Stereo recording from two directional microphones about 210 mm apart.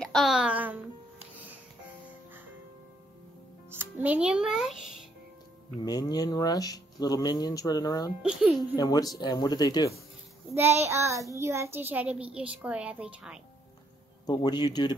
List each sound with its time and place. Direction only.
0.0 s speech: centre (ahead or behind)
3.7 s a child's voice: 10° right (ahead or behind)
5.8 s speech: 20° left (ahead or behind)
8.2 s speech: centre (ahead or behind)
8.7 s speech: 20° left (ahead or behind)
10.5 s a child's voice: 10° right (ahead or behind)
14.2 s speech: 20° left (ahead or behind)